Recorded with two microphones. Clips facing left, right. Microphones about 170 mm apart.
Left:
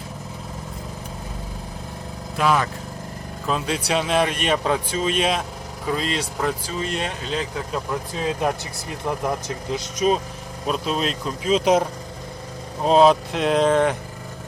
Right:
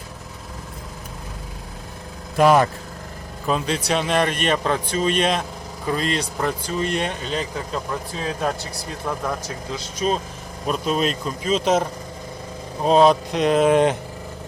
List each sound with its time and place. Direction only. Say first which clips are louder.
2.4 s speech: right 6 dB; 45° right (ahead or behind)
3.7 s speech: left 2 dB; 5° left (ahead or behind)
8.2 s speech: left 2 dB; 20° left (ahead or behind)
10.7 s speech: right 2 dB; centre (ahead or behind)
13.7 s vehicle: right 2 dB; 15° right (ahead or behind)